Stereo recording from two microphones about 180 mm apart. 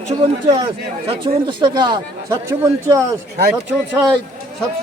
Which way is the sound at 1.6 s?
25° right (ahead or behind).